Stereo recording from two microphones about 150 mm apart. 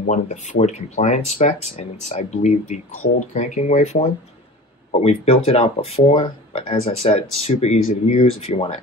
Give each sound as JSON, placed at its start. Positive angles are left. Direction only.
{"t": 0.0, "sound": "speech", "side_deg": 55}
{"t": 5.0, "sound": "speech", "side_deg": 40}